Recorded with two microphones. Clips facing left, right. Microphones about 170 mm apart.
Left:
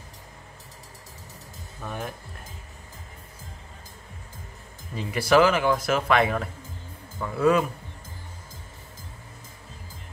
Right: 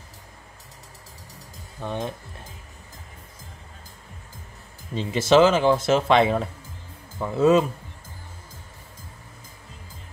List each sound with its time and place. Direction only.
1.8 s speech: 25° right (ahead or behind)
4.9 s speech: 25° right (ahead or behind)